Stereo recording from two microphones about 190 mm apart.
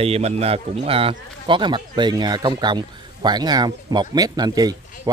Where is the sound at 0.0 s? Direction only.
30° right (ahead or behind).